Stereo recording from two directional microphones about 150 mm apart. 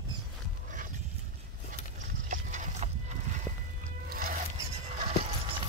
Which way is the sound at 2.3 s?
55° right (ahead or behind).